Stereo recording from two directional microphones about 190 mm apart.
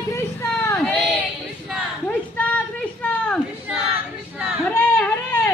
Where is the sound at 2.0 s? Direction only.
10° left (ahead or behind).